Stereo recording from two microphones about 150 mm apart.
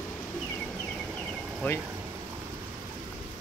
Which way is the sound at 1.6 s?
10° left (ahead or behind).